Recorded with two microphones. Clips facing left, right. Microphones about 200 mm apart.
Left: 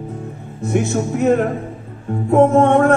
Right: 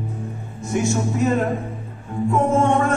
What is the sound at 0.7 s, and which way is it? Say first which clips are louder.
Music: left 3 dB; 60° left (ahead or behind).